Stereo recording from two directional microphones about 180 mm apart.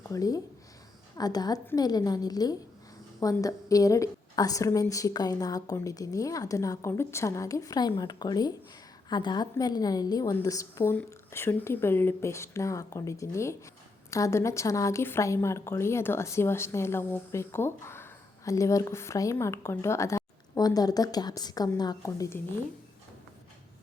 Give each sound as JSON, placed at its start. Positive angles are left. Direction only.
{"t": 0.1, "sound": "a woman's voice", "side_deg": 20}